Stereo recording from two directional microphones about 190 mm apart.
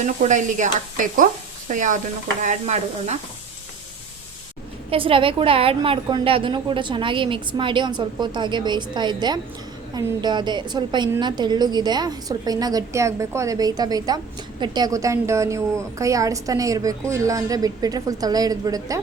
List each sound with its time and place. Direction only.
0.0 s speech: 40° right (ahead or behind)
4.9 s a woman's voice: 30° right (ahead or behind)